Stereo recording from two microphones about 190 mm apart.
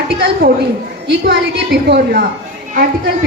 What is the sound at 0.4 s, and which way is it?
A woman's voice, 50° right (ahead or behind).